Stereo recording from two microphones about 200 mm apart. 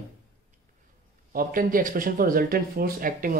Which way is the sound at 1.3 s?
45° right (ahead or behind).